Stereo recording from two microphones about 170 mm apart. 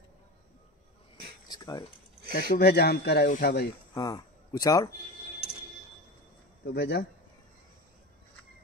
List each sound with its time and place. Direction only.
1.5 s a sound: 25° left (ahead or behind)
2.3 s speech: 75° left (ahead or behind)
3.9 s speech: 20° left (ahead or behind)
6.6 s speech: 75° left (ahead or behind)